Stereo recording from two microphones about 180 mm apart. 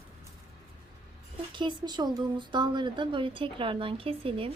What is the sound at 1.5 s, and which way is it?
A woman's voice, 25° right (ahead or behind).